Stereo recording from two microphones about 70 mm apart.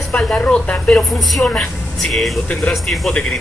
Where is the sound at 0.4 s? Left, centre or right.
Centre.